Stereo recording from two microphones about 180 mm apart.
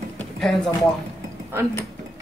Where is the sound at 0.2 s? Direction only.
5° left (ahead or behind).